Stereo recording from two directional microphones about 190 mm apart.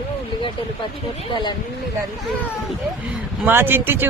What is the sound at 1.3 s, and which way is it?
Speech, 25° left (ahead or behind).